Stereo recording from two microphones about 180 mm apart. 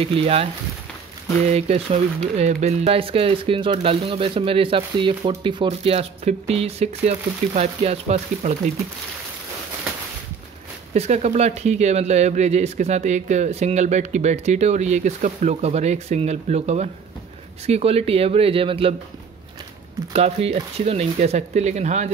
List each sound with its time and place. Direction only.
0.0 s speech: 30° right (ahead or behind)
1.5 s speech: 35° right (ahead or behind)
10.9 s speech: 40° right (ahead or behind)
20.1 s speech: 35° right (ahead or behind)